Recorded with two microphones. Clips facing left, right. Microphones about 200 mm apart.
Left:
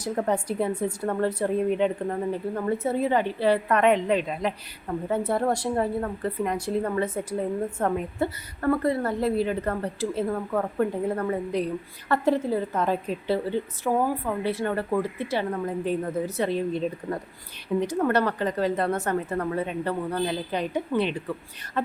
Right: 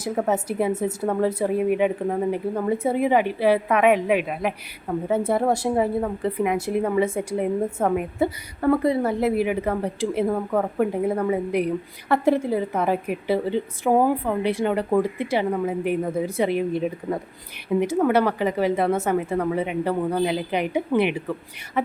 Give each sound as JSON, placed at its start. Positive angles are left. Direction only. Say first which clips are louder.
{"t": 0.0, "sound": "a woman's voice", "louder": "right 2 dB", "side_deg": -5}